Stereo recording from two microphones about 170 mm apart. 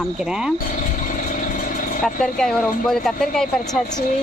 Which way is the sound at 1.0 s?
50° left (ahead or behind).